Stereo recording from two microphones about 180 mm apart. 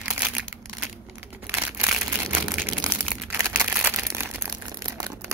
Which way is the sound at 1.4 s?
10° right (ahead or behind).